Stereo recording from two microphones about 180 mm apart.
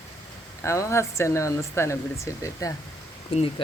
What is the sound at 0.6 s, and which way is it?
Speech, 15° left (ahead or behind).